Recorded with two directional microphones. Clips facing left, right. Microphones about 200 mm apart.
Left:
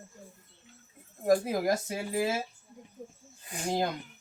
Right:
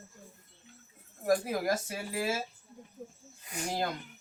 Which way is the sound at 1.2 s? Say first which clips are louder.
Left 3 dB; 20° left (ahead or behind).